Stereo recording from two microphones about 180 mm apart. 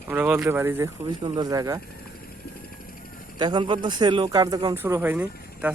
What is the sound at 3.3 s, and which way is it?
Speech, 25° right (ahead or behind).